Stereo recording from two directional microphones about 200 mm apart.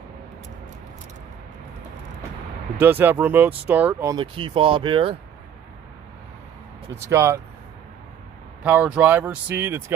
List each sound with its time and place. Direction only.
2.8 s speech: 10° right (ahead or behind)
4.2 s speech: 25° right (ahead or behind)
6.9 s speech: 15° right (ahead or behind)
8.6 s speech: 5° right (ahead or behind)